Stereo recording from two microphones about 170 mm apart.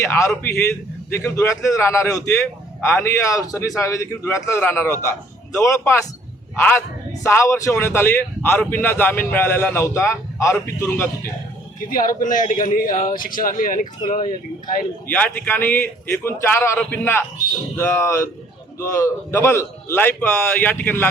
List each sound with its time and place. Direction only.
0.0 s speech: 15° left (ahead or behind)
11.9 s speech: 55° left (ahead or behind)
15.0 s speech: 10° left (ahead or behind)